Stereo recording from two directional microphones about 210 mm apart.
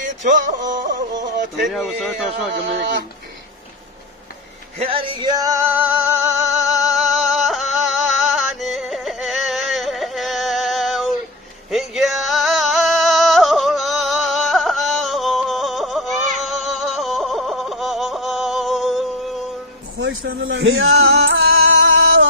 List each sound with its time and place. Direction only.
0.0 s music: 35° right (ahead or behind)
1.7 s a man's voice: centre (ahead or behind)
2.3 s speech: 55° right (ahead or behind)
4.8 s music: 25° right (ahead or behind); by 19.0 s centre (ahead or behind)
20.0 s male singing: 60° right (ahead or behind)